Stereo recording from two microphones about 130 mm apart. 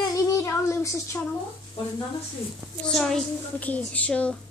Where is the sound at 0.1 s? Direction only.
25° left (ahead or behind).